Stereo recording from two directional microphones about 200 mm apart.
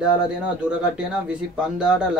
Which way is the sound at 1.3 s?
5° right (ahead or behind).